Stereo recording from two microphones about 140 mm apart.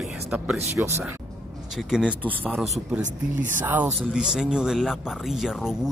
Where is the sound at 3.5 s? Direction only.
15° right (ahead or behind).